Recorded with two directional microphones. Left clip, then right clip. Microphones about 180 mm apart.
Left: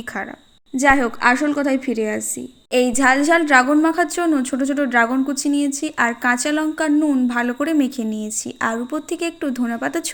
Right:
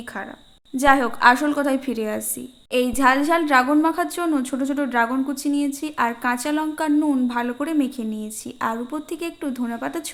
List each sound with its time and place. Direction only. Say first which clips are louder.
0.8 s a woman's voice: left 1 dB; 10° left (ahead or behind)
2.7 s a woman's voice: left 2 dB; 15° left (ahead or behind)